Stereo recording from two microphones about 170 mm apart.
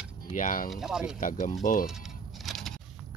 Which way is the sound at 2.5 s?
Centre (ahead or behind).